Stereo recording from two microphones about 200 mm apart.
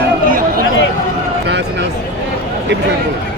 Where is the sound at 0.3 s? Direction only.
45° right (ahead or behind).